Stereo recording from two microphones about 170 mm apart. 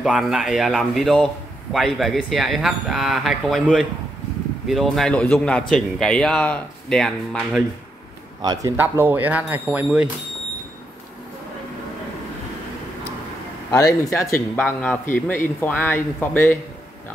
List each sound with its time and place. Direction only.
0.0 s a man's voice: centre (ahead or behind)
8.4 s a man's voice: 25° right (ahead or behind)
8.7 s speech: 10° right (ahead or behind)
13.7 s speech: 20° left (ahead or behind)